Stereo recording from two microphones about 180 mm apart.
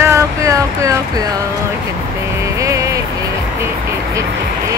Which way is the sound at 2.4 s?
15° right (ahead or behind).